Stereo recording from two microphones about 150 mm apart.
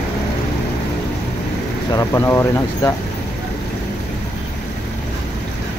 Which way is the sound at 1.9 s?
15° left (ahead or behind).